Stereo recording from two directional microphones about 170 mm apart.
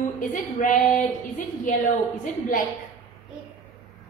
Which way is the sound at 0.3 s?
50° left (ahead or behind).